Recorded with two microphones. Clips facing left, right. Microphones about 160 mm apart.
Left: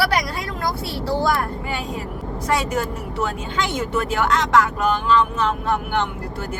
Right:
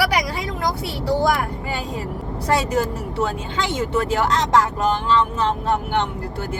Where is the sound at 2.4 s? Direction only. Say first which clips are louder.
Right 2 dB; 30° right (ahead or behind).